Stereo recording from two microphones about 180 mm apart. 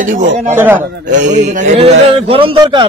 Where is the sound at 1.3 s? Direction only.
45° right (ahead or behind); by 2.8 s 30° right (ahead or behind).